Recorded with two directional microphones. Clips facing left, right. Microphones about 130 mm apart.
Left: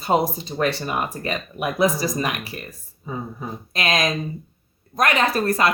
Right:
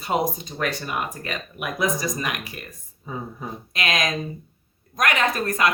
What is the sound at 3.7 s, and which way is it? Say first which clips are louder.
Speech: left 3 dB; 35° left (ahead or behind).